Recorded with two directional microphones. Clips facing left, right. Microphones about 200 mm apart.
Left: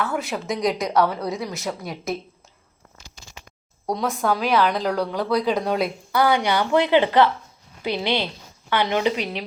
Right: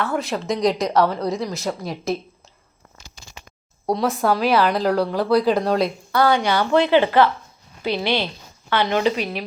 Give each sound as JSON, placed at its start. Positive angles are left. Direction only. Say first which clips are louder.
{"t": 0.0, "sound": "a woman's voice", "louder": "right 2 dB", "side_deg": 5}
{"t": 3.8, "sound": "a woman's voice", "louder": "right 3 dB", "side_deg": -5}